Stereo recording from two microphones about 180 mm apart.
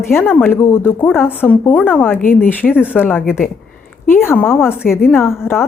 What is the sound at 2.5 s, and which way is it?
Speech, 10° left (ahead or behind).